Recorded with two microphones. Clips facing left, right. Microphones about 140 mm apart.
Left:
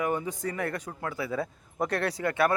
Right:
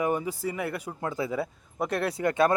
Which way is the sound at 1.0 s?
20° right (ahead or behind).